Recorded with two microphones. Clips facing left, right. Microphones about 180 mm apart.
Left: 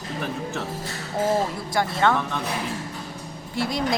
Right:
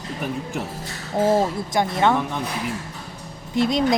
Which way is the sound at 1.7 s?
20° right (ahead or behind).